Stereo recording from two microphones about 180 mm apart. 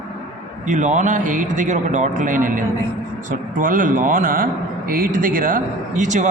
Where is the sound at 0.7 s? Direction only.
45° right (ahead or behind).